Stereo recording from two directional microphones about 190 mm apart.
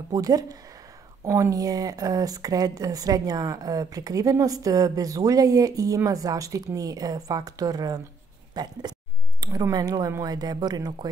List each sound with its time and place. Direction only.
0.1 s speech: 20° right (ahead or behind)